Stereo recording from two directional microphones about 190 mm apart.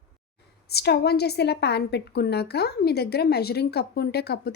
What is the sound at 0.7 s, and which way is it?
A woman's voice, 55° left (ahead or behind).